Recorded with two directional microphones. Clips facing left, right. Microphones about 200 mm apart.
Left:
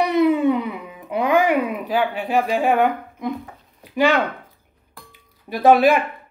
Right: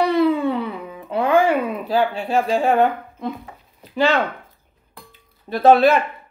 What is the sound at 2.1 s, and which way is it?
Speech, 15° left (ahead or behind).